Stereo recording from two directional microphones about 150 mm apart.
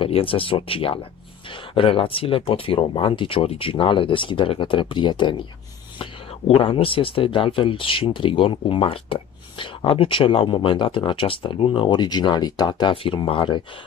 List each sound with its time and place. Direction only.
0.0 s speech: 35° left (ahead or behind)